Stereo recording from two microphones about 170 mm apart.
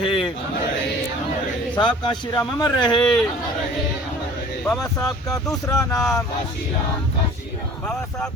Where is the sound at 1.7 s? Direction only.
25° left (ahead or behind).